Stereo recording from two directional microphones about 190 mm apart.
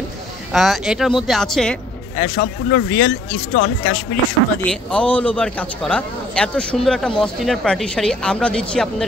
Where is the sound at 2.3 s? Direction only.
75° left (ahead or behind).